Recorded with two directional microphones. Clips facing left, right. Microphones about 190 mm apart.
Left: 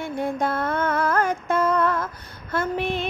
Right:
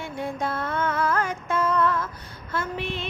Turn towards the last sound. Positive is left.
turn(degrees=50)  # may be behind; listen again after turning